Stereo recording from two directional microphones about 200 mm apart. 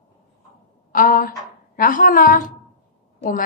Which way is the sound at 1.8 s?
45° left (ahead or behind).